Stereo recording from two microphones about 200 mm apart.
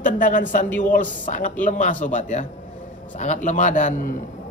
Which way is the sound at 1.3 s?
40° left (ahead or behind).